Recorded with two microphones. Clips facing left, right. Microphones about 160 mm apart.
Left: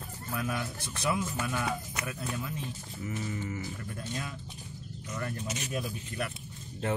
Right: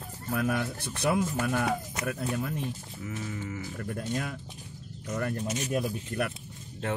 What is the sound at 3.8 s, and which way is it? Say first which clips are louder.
Speech: right 6 dB; 50° right (ahead or behind).